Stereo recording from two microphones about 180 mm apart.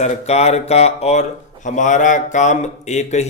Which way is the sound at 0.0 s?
40° left (ahead or behind).